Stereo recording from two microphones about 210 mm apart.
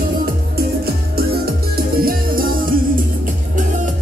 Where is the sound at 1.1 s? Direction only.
45° right (ahead or behind).